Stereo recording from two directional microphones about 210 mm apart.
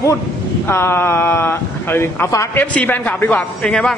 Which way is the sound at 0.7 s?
10° left (ahead or behind).